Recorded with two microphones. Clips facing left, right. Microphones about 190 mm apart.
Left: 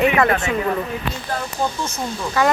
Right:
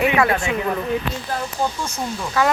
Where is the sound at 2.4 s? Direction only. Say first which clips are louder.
Left 1 dB; centre (ahead or behind).